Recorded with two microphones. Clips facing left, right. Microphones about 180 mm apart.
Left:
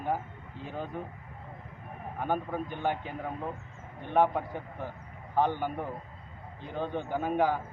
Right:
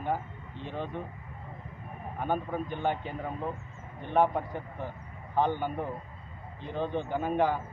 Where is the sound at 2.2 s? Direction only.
5° left (ahead or behind).